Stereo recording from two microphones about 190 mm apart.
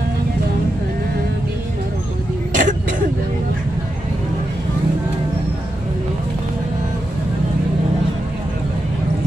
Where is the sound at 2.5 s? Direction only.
40° right (ahead or behind).